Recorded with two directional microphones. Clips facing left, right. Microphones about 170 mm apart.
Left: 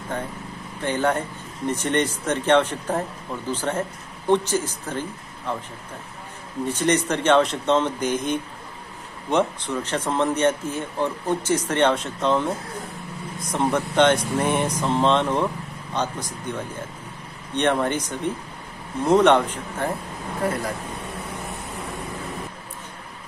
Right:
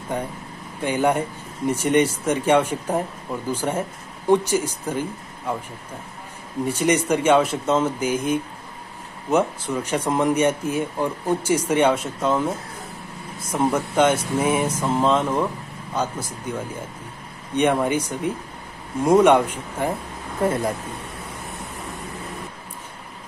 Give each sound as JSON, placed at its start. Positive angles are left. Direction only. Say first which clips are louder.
{"t": 0.8, "sound": "speech", "louder": "right 2 dB", "side_deg": -10}
{"t": 13.5, "sound": "speech", "louder": "right 1 dB", "side_deg": -5}
{"t": 17.6, "sound": "speech", "louder": "right 2 dB", "side_deg": -10}
{"t": 20.4, "sound": "speech", "louder": "right 4 dB", "side_deg": -25}